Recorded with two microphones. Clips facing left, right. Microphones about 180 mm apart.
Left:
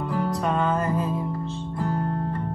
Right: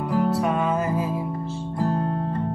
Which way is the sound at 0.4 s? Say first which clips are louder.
Right 1 dB; 5° right (ahead or behind).